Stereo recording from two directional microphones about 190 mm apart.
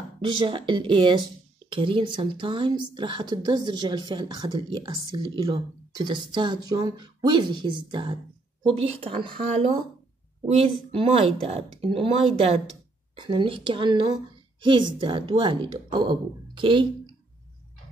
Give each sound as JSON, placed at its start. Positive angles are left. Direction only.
{"t": 0.5, "sound": "a woman's voice", "side_deg": -25}